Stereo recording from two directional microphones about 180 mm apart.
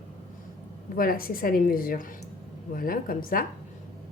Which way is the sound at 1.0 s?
55° left (ahead or behind).